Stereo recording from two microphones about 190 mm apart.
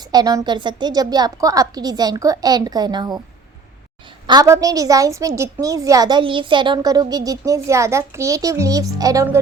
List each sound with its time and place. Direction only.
0.1 s a woman's voice: 20° right (ahead or behind)
4.3 s a woman's voice: 20° right (ahead or behind)